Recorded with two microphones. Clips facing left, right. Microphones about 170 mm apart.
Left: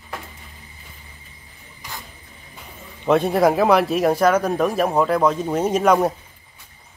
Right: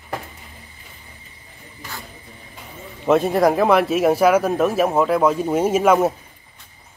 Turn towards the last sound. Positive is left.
turn(degrees=-5)  # may be behind; listen again after turning